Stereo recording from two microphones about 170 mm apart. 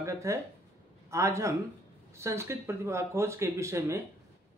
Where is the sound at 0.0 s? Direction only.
15° right (ahead or behind).